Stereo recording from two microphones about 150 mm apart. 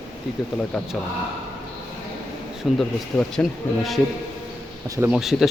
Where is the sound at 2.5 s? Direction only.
Centre (ahead or behind).